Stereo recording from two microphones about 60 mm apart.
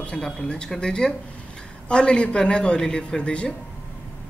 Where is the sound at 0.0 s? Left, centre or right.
Centre.